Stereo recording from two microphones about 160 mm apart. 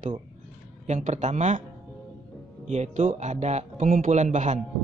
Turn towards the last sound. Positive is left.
turn(degrees=-50)  # may be behind; listen again after turning